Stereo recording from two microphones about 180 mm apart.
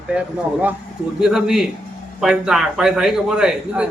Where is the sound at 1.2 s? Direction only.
5° right (ahead or behind).